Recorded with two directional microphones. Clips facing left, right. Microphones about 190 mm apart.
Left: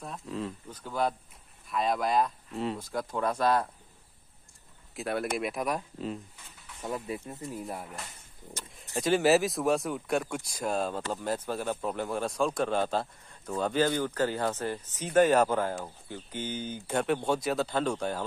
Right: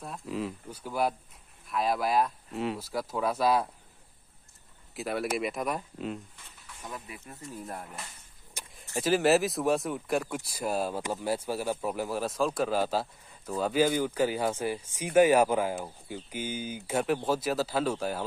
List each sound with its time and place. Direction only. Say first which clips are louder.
0.0 s speech: right 1 dB; 5° right (ahead or behind)
4.9 s speech: even; centre (ahead or behind)
6.8 s speech: left 8 dB; 20° left (ahead or behind)
7.5 s speech: even; 5° left (ahead or behind)
8.9 s speech: even; centre (ahead or behind)